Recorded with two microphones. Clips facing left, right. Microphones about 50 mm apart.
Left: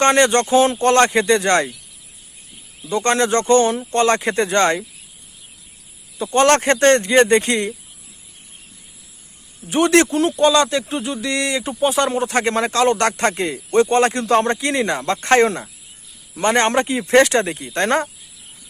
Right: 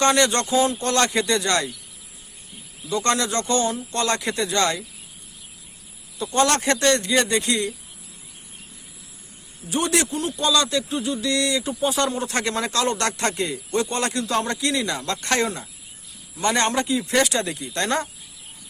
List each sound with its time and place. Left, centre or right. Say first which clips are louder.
0.0 s speech: left 5 dB; left
2.9 s speech: left 5 dB; left
6.1 s speech: left 6 dB; left
9.6 s a man's voice: left 8 dB; left
10.4 s speech: left 5 dB; left
17.4 s speech: left 5 dB; left